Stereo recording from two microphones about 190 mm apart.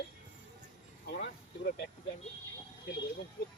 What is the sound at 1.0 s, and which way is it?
Vehicle, 55° left (ahead or behind).